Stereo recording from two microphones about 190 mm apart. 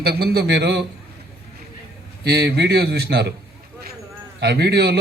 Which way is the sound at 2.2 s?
60° right (ahead or behind).